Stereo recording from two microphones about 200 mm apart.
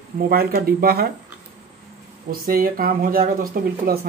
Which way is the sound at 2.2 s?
45° right (ahead or behind).